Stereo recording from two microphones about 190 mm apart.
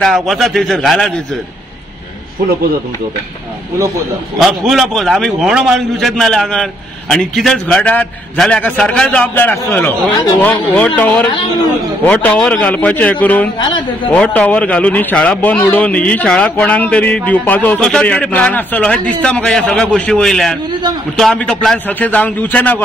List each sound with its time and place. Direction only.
0.0 s a man's voice: centre (ahead or behind)
4.4 s a man's voice: centre (ahead or behind)
13.6 s a man's voice: 25° left (ahead or behind)
14.1 s a man's voice: 5° left (ahead or behind)